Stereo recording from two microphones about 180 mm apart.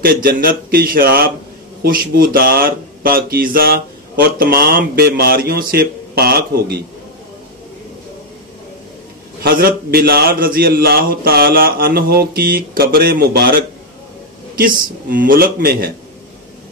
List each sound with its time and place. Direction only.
0.0 s speech: 55° right (ahead or behind)
9.4 s speech: 55° right (ahead or behind)